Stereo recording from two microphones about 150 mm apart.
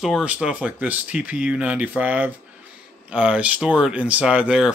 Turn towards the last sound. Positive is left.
turn(degrees=-5)  # may be behind; listen again after turning